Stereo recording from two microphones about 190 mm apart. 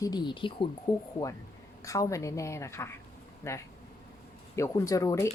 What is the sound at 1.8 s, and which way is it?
Speech, 15° left (ahead or behind).